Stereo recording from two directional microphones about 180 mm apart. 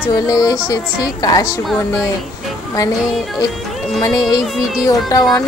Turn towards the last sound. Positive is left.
turn(degrees=20)  # may be behind; listen again after turning